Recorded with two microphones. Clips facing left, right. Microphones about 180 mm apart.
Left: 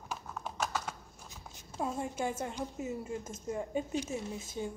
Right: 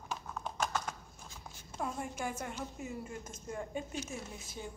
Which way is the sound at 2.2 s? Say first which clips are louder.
Left 4 dB; 25° left (ahead or behind).